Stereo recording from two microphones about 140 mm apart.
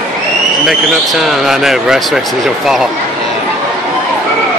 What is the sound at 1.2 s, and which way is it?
Speech, 5° right (ahead or behind).